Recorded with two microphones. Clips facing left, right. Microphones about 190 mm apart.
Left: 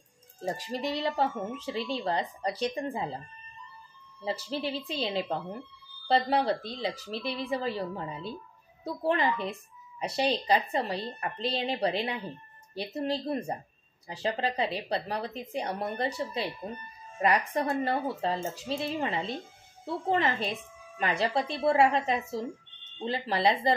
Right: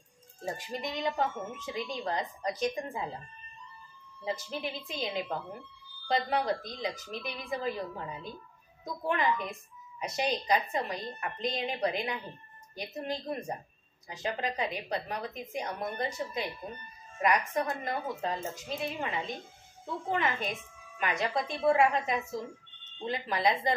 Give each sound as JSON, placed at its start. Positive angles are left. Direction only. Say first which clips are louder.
{"t": 0.4, "sound": "a woman's voice", "louder": "left 4 dB", "side_deg": 35}
{"t": 4.2, "sound": "a woman's voice", "louder": "left 3 dB", "side_deg": 30}